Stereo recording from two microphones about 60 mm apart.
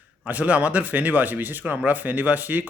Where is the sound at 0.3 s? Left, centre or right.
Right.